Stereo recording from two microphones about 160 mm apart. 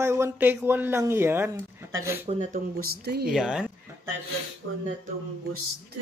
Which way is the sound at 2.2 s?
45° right (ahead or behind).